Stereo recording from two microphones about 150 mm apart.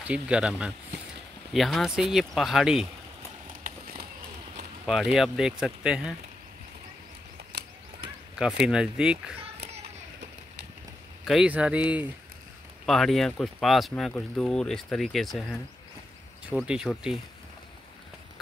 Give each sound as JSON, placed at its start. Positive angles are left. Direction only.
{"t": 0.0, "sound": "speech", "side_deg": -10}
{"t": 3.6, "sound": "run", "side_deg": -80}
{"t": 4.8, "sound": "speech", "side_deg": 0}
{"t": 7.5, "sound": "a sound", "side_deg": -90}
{"t": 8.6, "sound": "speech", "side_deg": -5}
{"t": 11.2, "sound": "speech", "side_deg": -5}
{"t": 12.8, "sound": "speech", "side_deg": 0}